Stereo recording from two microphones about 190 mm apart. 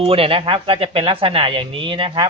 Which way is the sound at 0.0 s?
30° right (ahead or behind).